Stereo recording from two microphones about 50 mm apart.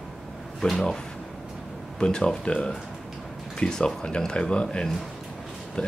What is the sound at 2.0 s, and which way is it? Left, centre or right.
Speech, centre.